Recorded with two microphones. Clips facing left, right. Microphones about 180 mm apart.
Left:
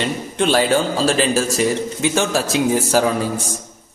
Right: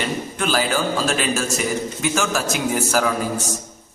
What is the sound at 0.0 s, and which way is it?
A man's voice, 30° left (ahead or behind).